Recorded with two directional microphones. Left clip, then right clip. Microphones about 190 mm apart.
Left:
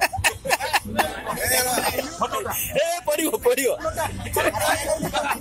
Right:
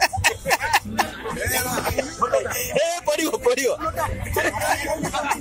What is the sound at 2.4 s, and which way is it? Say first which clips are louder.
Music: right 3 dB; 40° left (ahead or behind).